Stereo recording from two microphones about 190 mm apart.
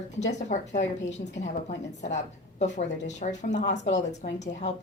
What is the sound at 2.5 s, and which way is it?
A woman's voice, 40° left (ahead or behind).